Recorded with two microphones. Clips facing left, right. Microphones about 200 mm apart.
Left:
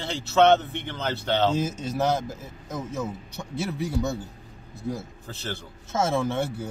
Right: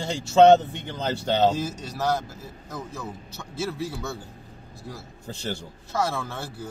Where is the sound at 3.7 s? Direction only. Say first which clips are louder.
Left 3 dB; 20° left (ahead or behind).